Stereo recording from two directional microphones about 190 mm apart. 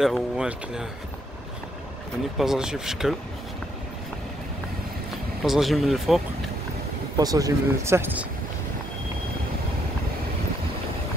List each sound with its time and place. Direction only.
0.0 s speech: 5° right (ahead or behind)
2.3 s speech: centre (ahead or behind)
5.4 s speech: centre (ahead or behind)
7.2 s speech: 20° right (ahead or behind)